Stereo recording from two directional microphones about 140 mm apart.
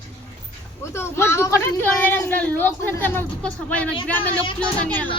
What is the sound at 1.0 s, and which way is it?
Speech, 20° left (ahead or behind).